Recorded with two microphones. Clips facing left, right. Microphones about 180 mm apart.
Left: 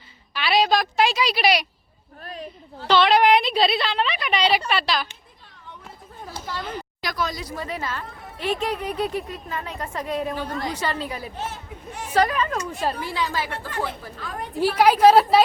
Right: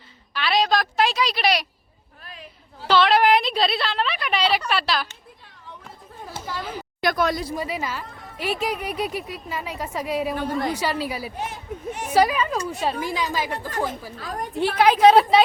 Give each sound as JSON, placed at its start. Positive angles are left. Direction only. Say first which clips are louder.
{"t": 0.3, "sound": "a woman's voice", "louder": "left 1 dB", "side_deg": 5}
{"t": 2.2, "sound": "a sound", "louder": "left 8 dB", "side_deg": 40}
{"t": 2.8, "sound": "a woman's voice", "louder": "left 1 dB", "side_deg": -5}
{"t": 6.4, "sound": "speech", "louder": "even", "side_deg": -5}
{"t": 7.0, "sound": "speech", "louder": "right 7 dB", "side_deg": -55}
{"t": 7.5, "sound": "a woman's voice", "louder": "right 2 dB", "side_deg": -10}
{"t": 13.1, "sound": "speech", "louder": "right 1 dB", "side_deg": -15}
{"t": 13.7, "sound": "a woman's voice", "louder": "right 2 dB", "side_deg": -40}
{"t": 14.5, "sound": "a woman's voice", "louder": "left 1 dB", "side_deg": 5}